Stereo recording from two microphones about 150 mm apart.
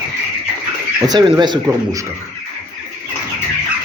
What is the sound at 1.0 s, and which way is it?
Speech, 30° right (ahead or behind).